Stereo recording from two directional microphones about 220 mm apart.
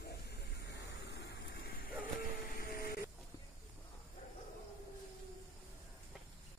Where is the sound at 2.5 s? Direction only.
45° left (ahead or behind).